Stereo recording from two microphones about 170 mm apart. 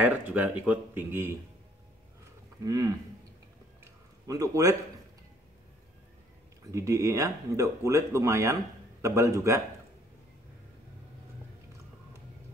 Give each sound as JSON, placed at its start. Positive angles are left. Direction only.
{"t": 0.0, "sound": "speech", "side_deg": -10}
{"t": 2.6, "sound": "speech", "side_deg": -20}
{"t": 3.8, "sound": "a sound", "side_deg": -20}
{"t": 6.7, "sound": "speech", "side_deg": -20}